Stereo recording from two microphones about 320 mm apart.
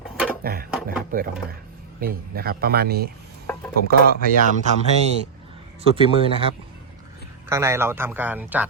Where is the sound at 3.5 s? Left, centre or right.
Centre.